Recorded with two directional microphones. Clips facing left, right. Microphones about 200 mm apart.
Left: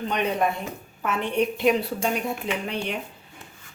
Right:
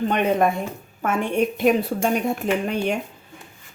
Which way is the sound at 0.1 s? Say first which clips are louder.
Right 2 dB; 50° right (ahead or behind).